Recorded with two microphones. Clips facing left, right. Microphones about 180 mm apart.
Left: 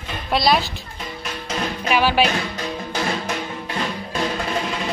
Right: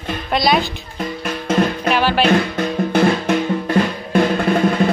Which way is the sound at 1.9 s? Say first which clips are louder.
Left 1 dB; 10° left (ahead or behind).